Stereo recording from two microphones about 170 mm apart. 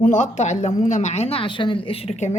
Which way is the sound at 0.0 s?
45° left (ahead or behind).